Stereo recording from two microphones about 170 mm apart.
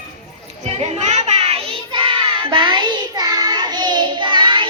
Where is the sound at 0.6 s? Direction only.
40° right (ahead or behind).